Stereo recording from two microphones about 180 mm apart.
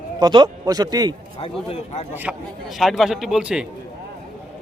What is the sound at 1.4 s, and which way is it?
Speech, 30° left (ahead or behind).